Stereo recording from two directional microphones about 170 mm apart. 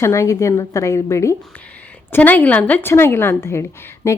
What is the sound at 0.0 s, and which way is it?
A woman's voice, 15° left (ahead or behind).